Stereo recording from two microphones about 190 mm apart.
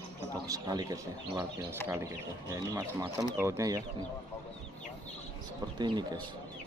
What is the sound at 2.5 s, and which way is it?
Speech, 15° right (ahead or behind).